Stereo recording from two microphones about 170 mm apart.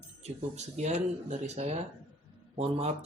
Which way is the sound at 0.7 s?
40° right (ahead or behind).